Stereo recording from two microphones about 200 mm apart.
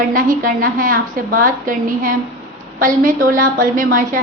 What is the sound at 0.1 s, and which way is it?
A woman's voice, 45° right (ahead or behind).